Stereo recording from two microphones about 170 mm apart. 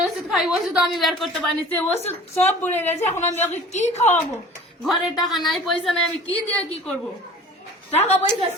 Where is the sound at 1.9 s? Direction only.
40° left (ahead or behind).